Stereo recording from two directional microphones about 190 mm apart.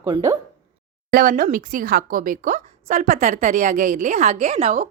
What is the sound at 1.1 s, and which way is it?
A woman's voice, 50° right (ahead or behind).